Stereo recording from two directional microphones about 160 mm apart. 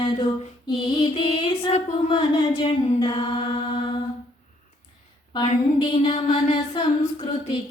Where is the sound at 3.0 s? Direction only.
30° left (ahead or behind).